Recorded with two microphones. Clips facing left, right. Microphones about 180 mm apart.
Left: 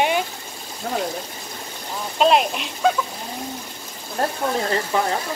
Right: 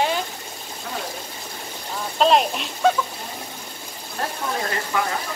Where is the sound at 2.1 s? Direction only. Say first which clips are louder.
Left 1 dB; 5° left (ahead or behind).